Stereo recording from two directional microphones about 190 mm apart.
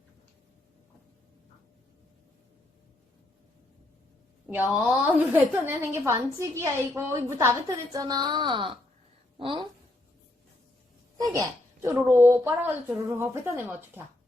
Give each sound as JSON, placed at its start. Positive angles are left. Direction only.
{"t": 4.7, "sound": "a woman's voice", "side_deg": -10}
{"t": 11.2, "sound": "a sound", "side_deg": -15}
{"t": 11.9, "sound": "a woman's voice", "side_deg": -10}